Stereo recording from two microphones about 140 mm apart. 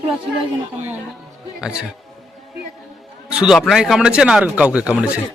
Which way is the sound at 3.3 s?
5° right (ahead or behind).